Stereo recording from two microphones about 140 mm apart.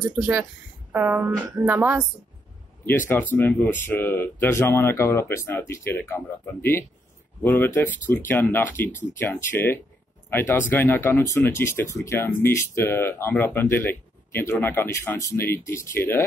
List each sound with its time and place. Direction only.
0.1 s a woman's voice: 10° right (ahead or behind)
2.8 s speech: 15° left (ahead or behind)